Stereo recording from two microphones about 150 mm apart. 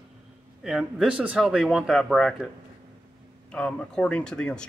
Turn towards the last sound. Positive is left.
turn(degrees=5)  # may be behind; listen again after turning